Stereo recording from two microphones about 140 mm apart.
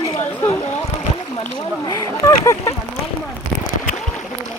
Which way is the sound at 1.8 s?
25° left (ahead or behind).